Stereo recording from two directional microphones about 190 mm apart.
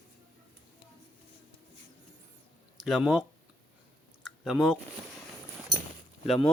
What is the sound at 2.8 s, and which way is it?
Speech, 5° right (ahead or behind).